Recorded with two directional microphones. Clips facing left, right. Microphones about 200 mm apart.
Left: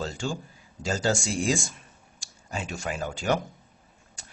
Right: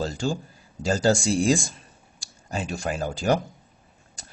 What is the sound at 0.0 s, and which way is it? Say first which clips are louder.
Speech: right 4 dB; 35° right (ahead or behind).